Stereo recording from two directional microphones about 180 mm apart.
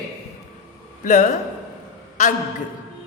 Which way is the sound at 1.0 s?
45° left (ahead or behind).